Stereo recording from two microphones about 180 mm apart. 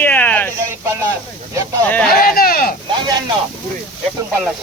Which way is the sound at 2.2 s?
55° left (ahead or behind).